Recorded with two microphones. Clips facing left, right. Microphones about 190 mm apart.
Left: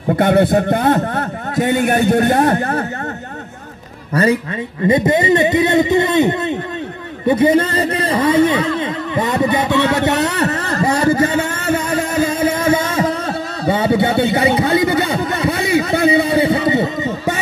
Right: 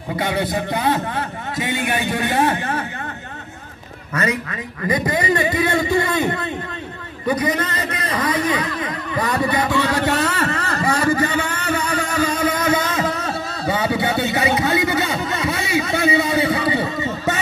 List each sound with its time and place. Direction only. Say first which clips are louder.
0.1 s a man's voice: left 9 dB; 55° left (ahead or behind)
4.1 s a man's voice: left 7 dB; 30° left (ahead or behind)
11.1 s a man's voice: left 5 dB; 45° left (ahead or behind)
12.0 s a sound: left 4 dB; 25° left (ahead or behind)
14.3 s speech: left 4 dB; 30° left (ahead or behind)
15.3 s a sound: left 6 dB; 35° left (ahead or behind)